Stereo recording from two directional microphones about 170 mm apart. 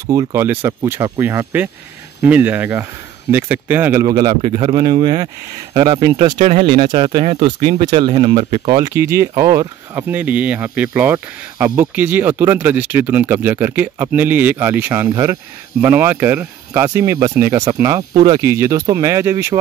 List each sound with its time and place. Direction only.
0.0 s speech: 20° right (ahead or behind)
8.7 s speech: 20° right (ahead or behind)